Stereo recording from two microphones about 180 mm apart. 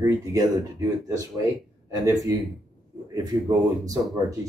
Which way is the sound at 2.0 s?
20° right (ahead or behind).